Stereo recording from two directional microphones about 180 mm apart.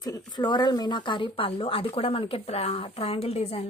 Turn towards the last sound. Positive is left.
turn(degrees=35)  # may be behind; listen again after turning